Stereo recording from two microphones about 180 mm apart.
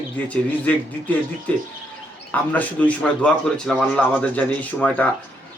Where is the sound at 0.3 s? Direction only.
10° left (ahead or behind).